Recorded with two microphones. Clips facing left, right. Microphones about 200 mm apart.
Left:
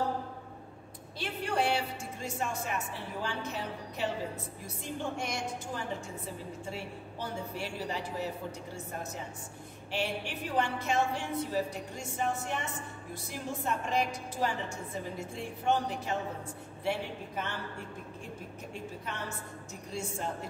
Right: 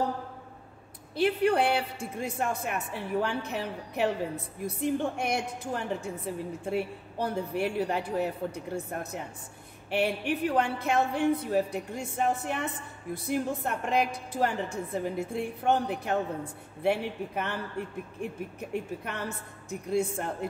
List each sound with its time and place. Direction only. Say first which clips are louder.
1.1 s speech: right 9 dB; 60° right (ahead or behind)